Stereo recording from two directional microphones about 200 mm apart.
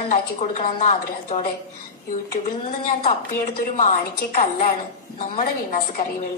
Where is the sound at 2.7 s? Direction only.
40° left (ahead or behind).